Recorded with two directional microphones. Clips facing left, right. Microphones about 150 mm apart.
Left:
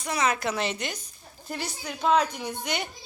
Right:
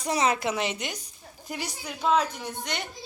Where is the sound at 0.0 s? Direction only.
30° right (ahead or behind).